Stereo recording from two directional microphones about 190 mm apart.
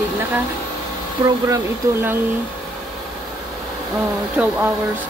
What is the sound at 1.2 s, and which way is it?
Speech, 15° right (ahead or behind).